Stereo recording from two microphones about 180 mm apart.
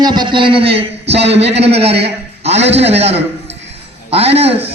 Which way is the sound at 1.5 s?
35° right (ahead or behind).